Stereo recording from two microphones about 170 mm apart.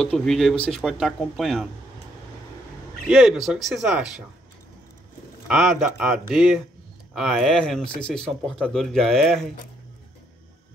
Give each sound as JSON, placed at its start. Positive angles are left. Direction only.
{"t": 0.0, "sound": "speech", "side_deg": 0}
{"t": 3.1, "sound": "speech", "side_deg": 0}
{"t": 5.5, "sound": "speech", "side_deg": 0}